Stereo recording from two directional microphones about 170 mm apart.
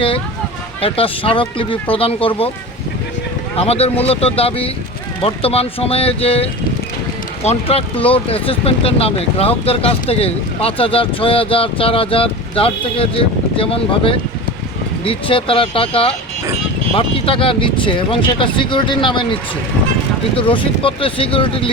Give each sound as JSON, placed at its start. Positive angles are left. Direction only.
{"t": 0.8, "sound": "speech", "side_deg": 35}
{"t": 3.6, "sound": "speech", "side_deg": 35}
{"t": 20.5, "sound": "speech", "side_deg": 30}